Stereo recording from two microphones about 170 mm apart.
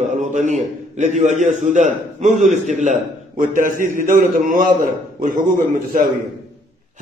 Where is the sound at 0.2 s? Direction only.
45° right (ahead or behind).